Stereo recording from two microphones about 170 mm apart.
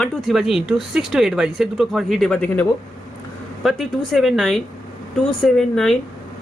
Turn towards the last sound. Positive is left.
turn(degrees=0)  # may be behind; listen again after turning